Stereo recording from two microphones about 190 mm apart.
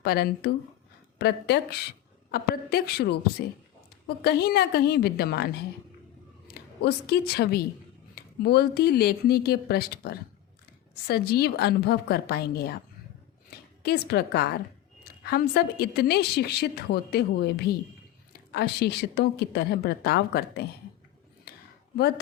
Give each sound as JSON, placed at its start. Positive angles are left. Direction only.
{"t": 0.0, "sound": "a woman's voice", "side_deg": 55}
{"t": 6.5, "sound": "a woman's voice", "side_deg": 55}
{"t": 13.5, "sound": "a sound", "side_deg": 55}
{"t": 13.8, "sound": "a woman's voice", "side_deg": 60}